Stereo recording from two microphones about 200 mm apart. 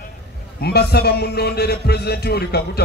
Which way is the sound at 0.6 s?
50° left (ahead or behind).